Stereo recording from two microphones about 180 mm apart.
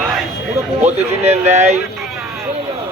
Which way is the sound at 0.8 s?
35° right (ahead or behind).